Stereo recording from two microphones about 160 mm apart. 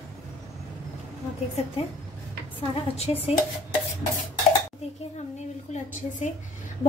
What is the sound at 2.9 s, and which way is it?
Dishes, 40° left (ahead or behind).